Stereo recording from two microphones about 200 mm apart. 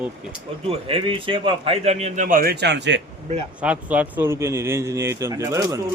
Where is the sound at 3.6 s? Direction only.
5° right (ahead or behind).